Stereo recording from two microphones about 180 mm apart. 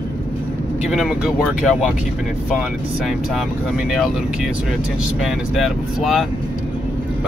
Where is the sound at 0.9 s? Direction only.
Centre (ahead or behind).